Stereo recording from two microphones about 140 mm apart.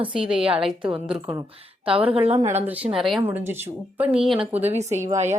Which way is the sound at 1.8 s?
40° right (ahead or behind).